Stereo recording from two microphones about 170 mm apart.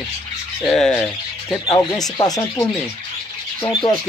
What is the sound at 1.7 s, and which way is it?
Speech, 25° left (ahead or behind).